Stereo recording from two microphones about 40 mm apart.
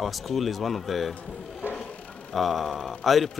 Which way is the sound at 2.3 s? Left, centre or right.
Centre.